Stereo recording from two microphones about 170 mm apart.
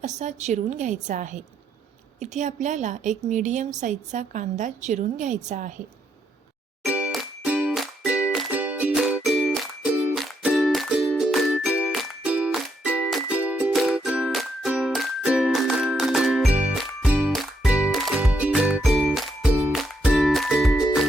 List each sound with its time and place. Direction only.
0.0 s a woman's voice: 45° right (ahead or behind)
6.9 s music: 5° right (ahead or behind)